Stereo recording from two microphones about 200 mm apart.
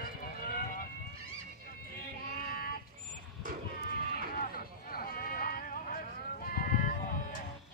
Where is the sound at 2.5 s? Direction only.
45° left (ahead or behind).